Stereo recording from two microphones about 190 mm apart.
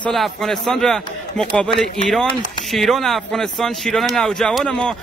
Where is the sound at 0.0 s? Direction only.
Centre (ahead or behind).